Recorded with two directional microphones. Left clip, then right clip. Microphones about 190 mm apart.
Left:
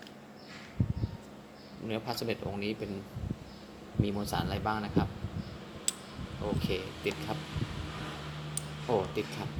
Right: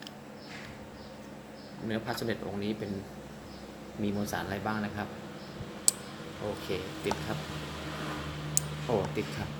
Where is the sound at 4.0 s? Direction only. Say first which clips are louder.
Even; 20° left (ahead or behind).